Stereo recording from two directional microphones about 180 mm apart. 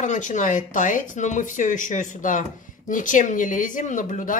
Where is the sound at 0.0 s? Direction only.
45° left (ahead or behind).